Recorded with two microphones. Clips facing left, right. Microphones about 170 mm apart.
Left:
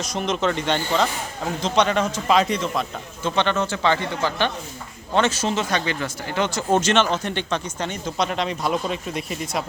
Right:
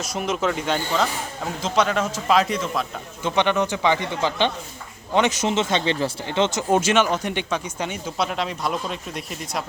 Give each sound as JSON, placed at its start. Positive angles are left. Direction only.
{"t": 0.0, "sound": "a man's voice", "side_deg": -5}
{"t": 3.2, "sound": "speech", "side_deg": -15}
{"t": 6.7, "sound": "speech", "side_deg": -10}